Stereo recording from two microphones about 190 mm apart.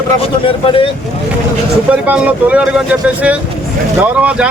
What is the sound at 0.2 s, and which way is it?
Speech, 30° left (ahead or behind).